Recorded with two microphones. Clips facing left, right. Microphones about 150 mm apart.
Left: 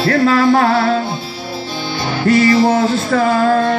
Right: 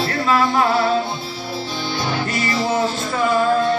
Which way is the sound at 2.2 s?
70° left (ahead or behind).